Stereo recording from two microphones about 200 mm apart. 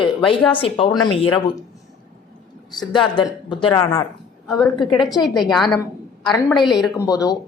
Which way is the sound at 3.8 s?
15° left (ahead or behind).